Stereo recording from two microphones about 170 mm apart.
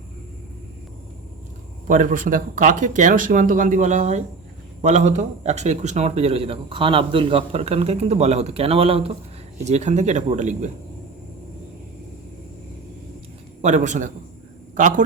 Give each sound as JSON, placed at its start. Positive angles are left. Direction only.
{"t": 1.9, "sound": "speech", "side_deg": -50}
{"t": 13.6, "sound": "speech", "side_deg": -45}